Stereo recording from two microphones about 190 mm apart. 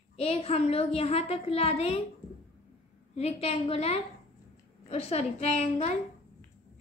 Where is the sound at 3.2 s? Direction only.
35° left (ahead or behind).